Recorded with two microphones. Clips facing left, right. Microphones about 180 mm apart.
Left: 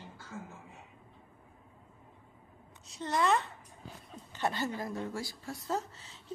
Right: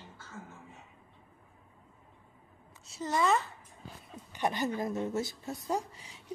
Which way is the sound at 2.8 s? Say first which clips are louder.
Right 1 dB; centre (ahead or behind).